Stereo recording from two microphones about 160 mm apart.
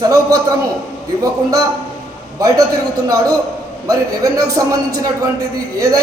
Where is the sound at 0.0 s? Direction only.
20° right (ahead or behind).